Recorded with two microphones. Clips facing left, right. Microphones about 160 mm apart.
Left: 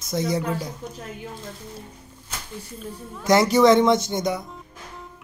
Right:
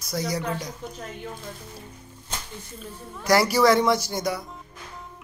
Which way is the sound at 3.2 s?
20° left (ahead or behind).